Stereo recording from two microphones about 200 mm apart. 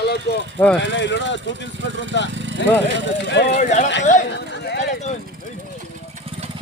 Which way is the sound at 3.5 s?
35° left (ahead or behind).